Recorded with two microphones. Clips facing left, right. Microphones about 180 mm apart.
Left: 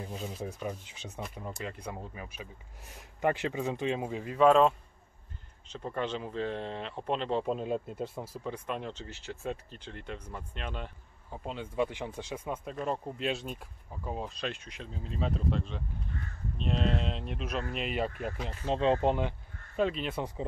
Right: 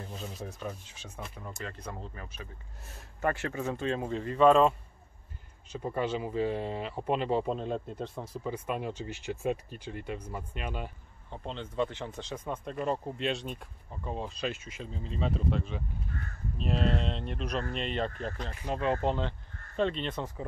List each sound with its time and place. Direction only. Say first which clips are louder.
0.0 s speech: left 3 dB; 10° left (ahead or behind); by 7.5 s 5° right (ahead or behind)
7.5 s speech: left 1 dB; 5° left (ahead or behind)
11.2 s speech: even; 10° left (ahead or behind)
12.7 s speech: right 4 dB; centre (ahead or behind)
18.7 s speech: left 3 dB; 25° left (ahead or behind)
19.8 s speech: even; 5° left (ahead or behind)